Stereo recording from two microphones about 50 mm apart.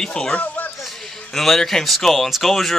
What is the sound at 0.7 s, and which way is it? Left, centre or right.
Speech, centre.